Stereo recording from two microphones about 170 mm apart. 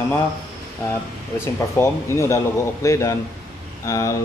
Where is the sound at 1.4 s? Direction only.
15° left (ahead or behind).